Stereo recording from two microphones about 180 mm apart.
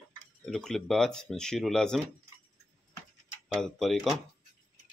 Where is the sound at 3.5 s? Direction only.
Centre (ahead or behind).